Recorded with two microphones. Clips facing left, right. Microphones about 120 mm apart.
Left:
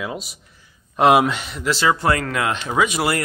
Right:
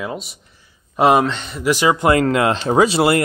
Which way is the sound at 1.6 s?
15° right (ahead or behind).